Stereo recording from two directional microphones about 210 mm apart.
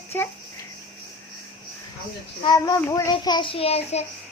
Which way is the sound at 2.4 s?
20° left (ahead or behind).